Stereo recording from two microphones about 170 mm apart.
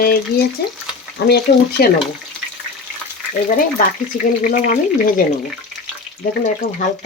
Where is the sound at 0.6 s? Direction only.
70° left (ahead or behind).